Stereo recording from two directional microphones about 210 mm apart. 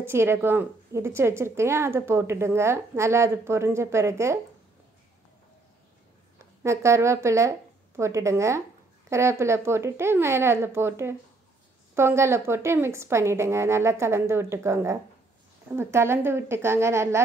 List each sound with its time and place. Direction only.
0.0 s a woman's voice: 10° right (ahead or behind)
6.3 s a woman's voice: 15° right (ahead or behind)